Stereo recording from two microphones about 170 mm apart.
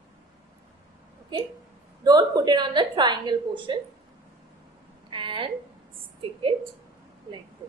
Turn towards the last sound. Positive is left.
turn(degrees=-30)  # may be behind; listen again after turning